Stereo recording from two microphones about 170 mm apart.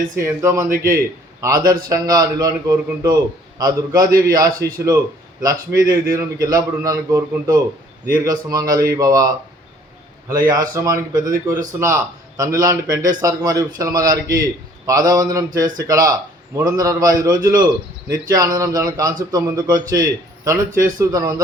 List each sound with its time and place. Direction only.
0.2 s a man's voice: 15° right (ahead or behind)